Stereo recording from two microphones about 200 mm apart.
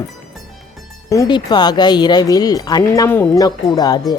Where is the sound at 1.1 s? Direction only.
20° left (ahead or behind).